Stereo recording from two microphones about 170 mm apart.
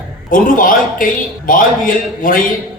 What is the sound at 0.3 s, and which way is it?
A man's voice, 55° left (ahead or behind).